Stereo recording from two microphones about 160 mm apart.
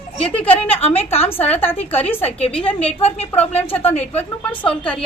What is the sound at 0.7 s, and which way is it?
Speech, 40° left (ahead or behind).